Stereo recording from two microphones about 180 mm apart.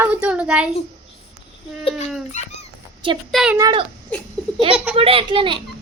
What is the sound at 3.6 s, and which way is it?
Speech, 25° right (ahead or behind).